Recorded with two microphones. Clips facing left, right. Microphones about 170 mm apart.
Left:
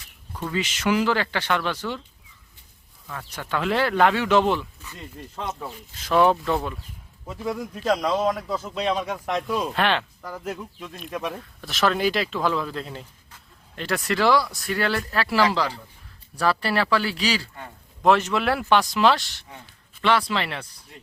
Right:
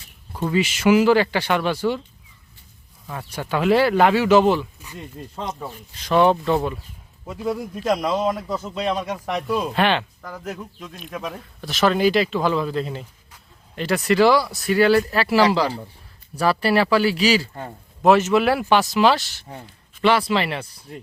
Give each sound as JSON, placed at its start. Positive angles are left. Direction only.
{"t": 0.5, "sound": "speech", "side_deg": -10}
{"t": 3.1, "sound": "speech", "side_deg": -20}
{"t": 5.5, "sound": "speech", "side_deg": 0}
{"t": 17.5, "sound": "a man's voice", "side_deg": -40}
{"t": 18.0, "sound": "speech", "side_deg": -5}